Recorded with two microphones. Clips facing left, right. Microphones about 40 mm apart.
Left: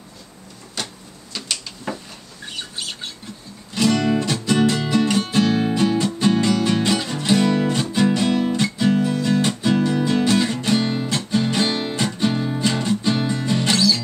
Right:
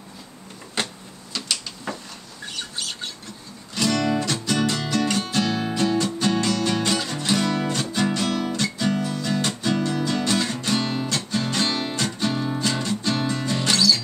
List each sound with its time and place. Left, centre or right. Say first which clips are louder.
0.8 s printer: right 3 dB; right
1.3 s a sound: even; centre
2.5 s squawk: left 1 dB; centre
3.7 s music: left 4 dB; centre